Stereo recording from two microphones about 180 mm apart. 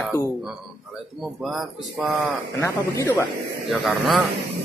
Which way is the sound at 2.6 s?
15° left (ahead or behind).